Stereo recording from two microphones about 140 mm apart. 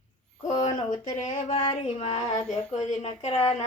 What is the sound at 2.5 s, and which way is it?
Speech, 5° left (ahead or behind).